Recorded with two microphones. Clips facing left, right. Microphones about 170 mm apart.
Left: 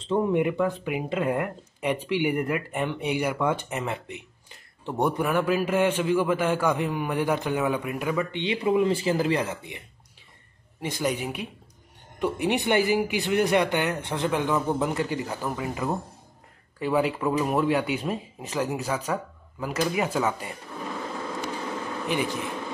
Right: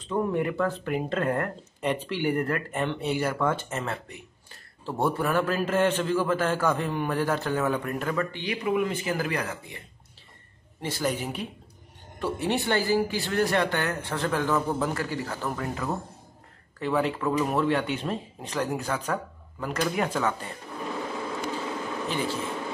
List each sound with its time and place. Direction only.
0.0 s speech: 20° left (ahead or behind)
8.4 s speech: 25° left (ahead or behind)
22.0 s speech: 15° left (ahead or behind)